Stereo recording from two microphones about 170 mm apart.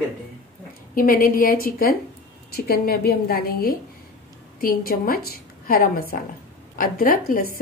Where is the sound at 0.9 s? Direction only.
55° left (ahead or behind).